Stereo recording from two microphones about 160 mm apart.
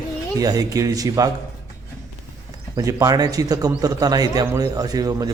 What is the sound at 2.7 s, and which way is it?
A man's voice, 20° right (ahead or behind).